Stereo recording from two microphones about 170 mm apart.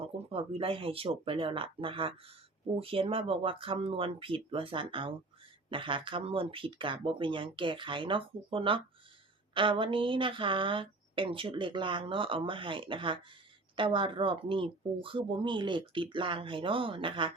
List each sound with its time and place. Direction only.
0.0 s speech: 35° right (ahead or behind)